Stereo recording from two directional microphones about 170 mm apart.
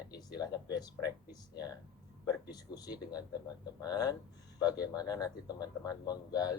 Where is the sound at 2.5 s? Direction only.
25° left (ahead or behind).